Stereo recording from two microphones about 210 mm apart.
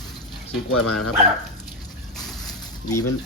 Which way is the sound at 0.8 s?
90° left.